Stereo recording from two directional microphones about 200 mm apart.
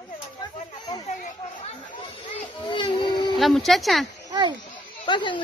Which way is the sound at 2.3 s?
25° left (ahead or behind).